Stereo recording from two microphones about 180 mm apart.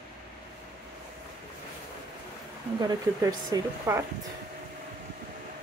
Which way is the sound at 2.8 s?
20° right (ahead or behind).